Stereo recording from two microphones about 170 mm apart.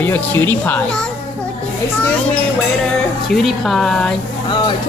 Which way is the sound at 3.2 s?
Centre (ahead or behind).